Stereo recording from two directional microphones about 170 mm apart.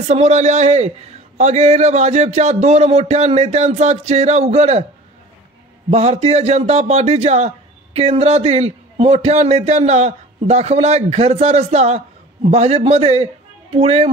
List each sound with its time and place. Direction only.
0.1 s a man's voice: 40° right (ahead or behind)
5.9 s a man's voice: 40° right (ahead or behind)